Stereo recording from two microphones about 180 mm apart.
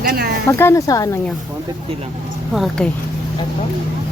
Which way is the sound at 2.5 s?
Centre (ahead or behind).